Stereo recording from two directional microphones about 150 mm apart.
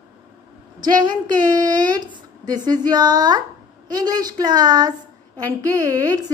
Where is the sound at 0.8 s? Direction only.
30° right (ahead or behind).